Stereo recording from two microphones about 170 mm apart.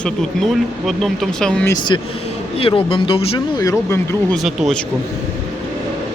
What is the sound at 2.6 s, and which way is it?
Speech, 30° left (ahead or behind).